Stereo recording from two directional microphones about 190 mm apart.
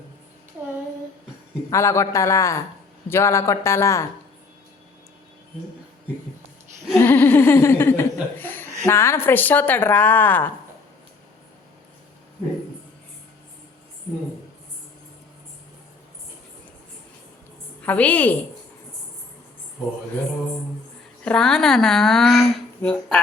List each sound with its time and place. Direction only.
1.7 s speech: 15° left (ahead or behind)
6.9 s speech: 10° left (ahead or behind)
17.8 s speech: 10° left (ahead or behind)
21.2 s speech: 5° left (ahead or behind)